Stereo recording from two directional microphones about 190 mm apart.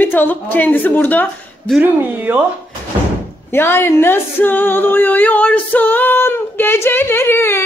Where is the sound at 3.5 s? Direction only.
10° left (ahead or behind).